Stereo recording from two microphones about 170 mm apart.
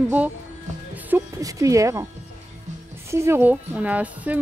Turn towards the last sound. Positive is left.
turn(degrees=-10)  # may be behind; listen again after turning